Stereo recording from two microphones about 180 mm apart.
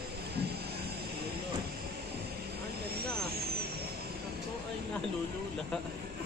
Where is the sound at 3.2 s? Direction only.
60° right (ahead or behind).